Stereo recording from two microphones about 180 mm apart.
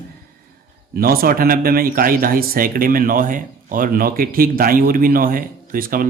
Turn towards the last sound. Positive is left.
turn(degrees=-50)  # may be behind; listen again after turning